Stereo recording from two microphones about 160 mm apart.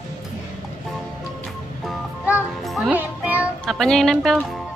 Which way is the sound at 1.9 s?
5° right (ahead or behind).